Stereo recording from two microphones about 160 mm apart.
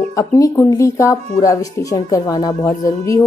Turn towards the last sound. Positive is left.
turn(degrees=20)  # may be behind; listen again after turning